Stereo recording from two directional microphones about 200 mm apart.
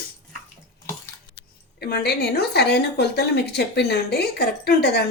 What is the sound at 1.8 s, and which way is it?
A woman's voice, 55° left (ahead or behind).